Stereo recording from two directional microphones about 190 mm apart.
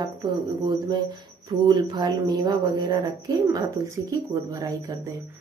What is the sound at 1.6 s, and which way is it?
A woman's voice, 20° right (ahead or behind).